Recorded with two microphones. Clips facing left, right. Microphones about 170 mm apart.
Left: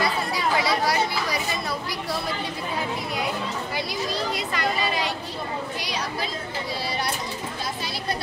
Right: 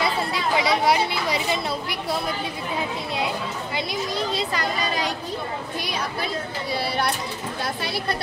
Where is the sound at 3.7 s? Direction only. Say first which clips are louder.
Right 3 dB; 20° right (ahead or behind).